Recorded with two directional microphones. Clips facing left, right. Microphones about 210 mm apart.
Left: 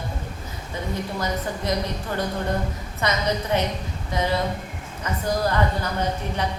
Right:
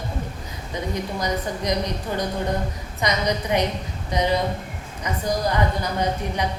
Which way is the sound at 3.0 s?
15° right (ahead or behind).